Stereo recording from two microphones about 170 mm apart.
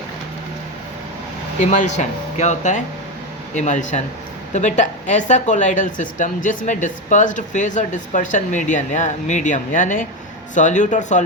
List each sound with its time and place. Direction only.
1.5 s a woman's voice: 45° left (ahead or behind)